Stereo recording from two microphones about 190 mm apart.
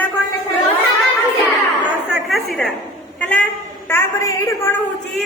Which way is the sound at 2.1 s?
Centre (ahead or behind).